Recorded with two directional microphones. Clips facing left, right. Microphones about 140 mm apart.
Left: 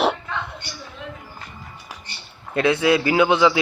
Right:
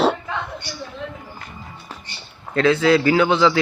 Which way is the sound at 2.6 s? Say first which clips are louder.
Right 2 dB; 15° left (ahead or behind).